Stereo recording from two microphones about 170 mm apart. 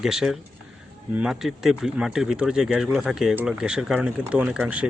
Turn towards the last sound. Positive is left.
turn(degrees=-5)  # may be behind; listen again after turning